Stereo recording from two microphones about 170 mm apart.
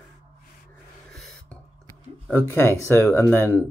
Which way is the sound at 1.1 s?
Centre (ahead or behind).